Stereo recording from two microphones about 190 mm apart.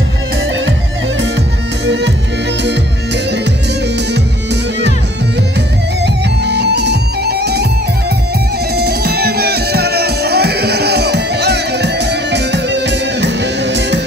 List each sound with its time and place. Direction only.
1.9 s music: 65° right (ahead or behind)
6.4 s music: 60° right (ahead or behind)
8.7 s music: 55° right (ahead or behind)